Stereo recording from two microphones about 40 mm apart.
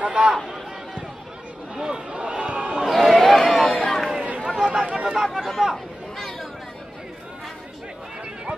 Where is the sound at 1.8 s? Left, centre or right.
Centre.